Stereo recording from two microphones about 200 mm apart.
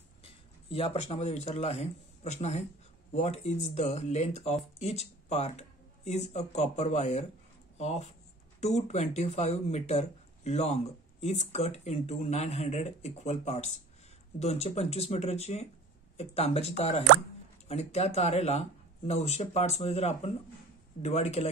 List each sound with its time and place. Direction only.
0.2 s speech: 30° left (ahead or behind)